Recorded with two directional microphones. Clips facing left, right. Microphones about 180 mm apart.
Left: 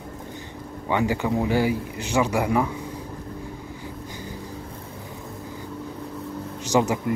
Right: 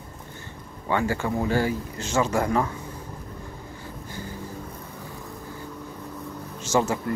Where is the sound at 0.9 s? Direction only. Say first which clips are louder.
Left 2 dB; 15° left (ahead or behind).